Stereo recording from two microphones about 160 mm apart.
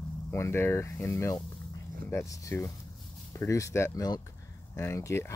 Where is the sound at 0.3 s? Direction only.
15° left (ahead or behind).